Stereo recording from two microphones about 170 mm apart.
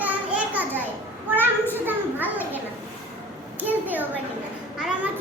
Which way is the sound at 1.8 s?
10° right (ahead or behind).